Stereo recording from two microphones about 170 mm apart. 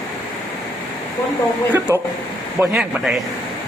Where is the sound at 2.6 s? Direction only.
Centre (ahead or behind).